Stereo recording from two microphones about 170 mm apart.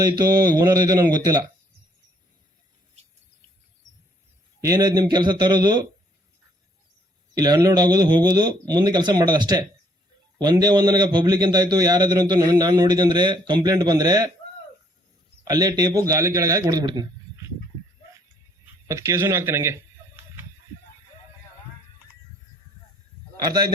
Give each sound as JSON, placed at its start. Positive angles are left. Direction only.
{"t": 0.2, "sound": "a man's voice", "side_deg": -20}
{"t": 4.6, "sound": "a man's voice", "side_deg": -20}
{"t": 7.3, "sound": "a man's voice", "side_deg": -20}
{"t": 15.4, "sound": "a man's voice", "side_deg": -25}
{"t": 18.9, "sound": "speech", "side_deg": -15}
{"t": 23.5, "sound": "a man's voice", "side_deg": -25}